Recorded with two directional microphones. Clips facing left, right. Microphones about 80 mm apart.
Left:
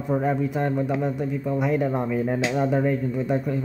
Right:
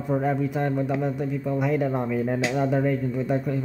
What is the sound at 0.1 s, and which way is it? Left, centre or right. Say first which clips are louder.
Speech: left 1 dB; left.